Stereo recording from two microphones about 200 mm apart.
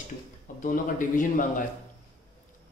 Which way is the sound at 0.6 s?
40° left (ahead or behind).